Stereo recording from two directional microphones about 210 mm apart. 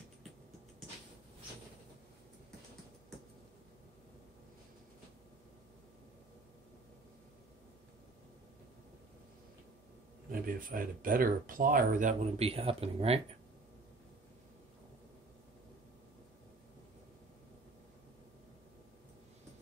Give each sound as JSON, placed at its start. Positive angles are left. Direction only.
{"t": 10.3, "sound": "speech", "side_deg": -40}